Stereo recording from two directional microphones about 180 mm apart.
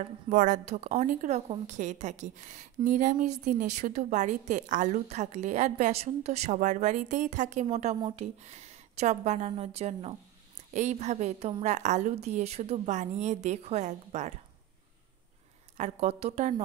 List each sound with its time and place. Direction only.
0.0 s a woman's voice: 45° right (ahead or behind)
15.8 s a woman's voice: 35° right (ahead or behind)